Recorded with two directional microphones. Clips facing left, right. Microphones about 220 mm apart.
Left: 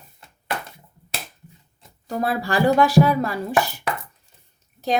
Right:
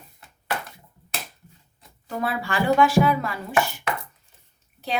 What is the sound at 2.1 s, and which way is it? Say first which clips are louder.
Speech: left 4 dB; 40° left (ahead or behind).